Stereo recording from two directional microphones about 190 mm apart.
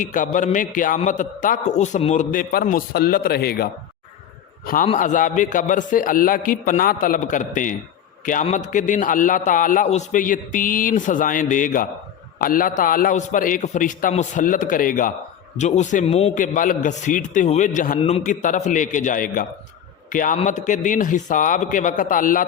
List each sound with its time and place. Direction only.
0.0 s a man's voice: 45° left (ahead or behind)
2.3 s a man's voice: 50° left (ahead or behind)